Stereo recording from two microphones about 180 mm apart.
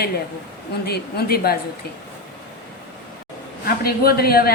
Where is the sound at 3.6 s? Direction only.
55° left (ahead or behind).